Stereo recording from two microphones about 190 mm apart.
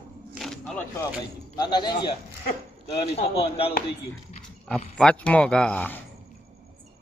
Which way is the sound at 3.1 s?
30° left (ahead or behind).